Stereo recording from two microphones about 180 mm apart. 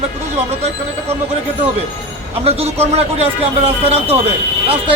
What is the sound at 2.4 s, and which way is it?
A man's voice, 35° right (ahead or behind).